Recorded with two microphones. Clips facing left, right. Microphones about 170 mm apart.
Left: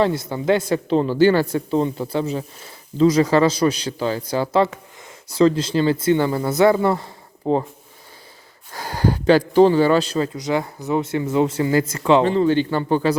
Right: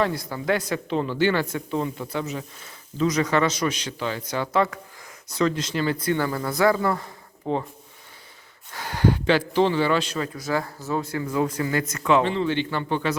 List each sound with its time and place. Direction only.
0.0 s speech: 25° left (ahead or behind)
8.7 s a man's voice: 40° left (ahead or behind)
10.3 s speech: 20° left (ahead or behind); by 13.1 s 35° left (ahead or behind)